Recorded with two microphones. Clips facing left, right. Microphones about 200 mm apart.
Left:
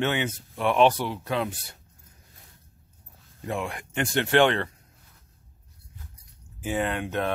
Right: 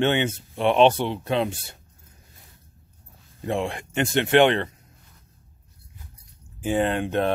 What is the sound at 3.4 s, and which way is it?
Speech, 25° right (ahead or behind).